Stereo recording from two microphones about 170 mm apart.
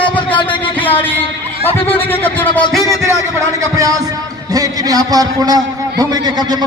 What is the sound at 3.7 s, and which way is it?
A man's voice, 20° right (ahead or behind).